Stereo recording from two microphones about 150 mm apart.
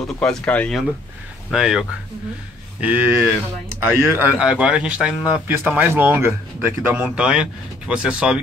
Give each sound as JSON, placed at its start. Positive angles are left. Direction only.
{"t": 0.2, "sound": "speech", "side_deg": 5}
{"t": 1.5, "sound": "speech", "side_deg": -5}